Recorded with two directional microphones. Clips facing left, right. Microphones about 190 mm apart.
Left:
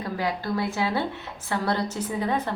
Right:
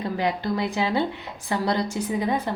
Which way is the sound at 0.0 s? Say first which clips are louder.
Right 3 dB; 20° right (ahead or behind).